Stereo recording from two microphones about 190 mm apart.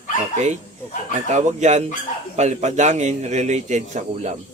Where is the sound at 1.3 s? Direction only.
40° right (ahead or behind).